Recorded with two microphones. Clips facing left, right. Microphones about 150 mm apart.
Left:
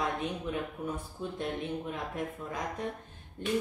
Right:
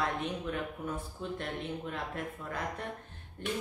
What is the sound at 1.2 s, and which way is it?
Speech, 15° left (ahead or behind).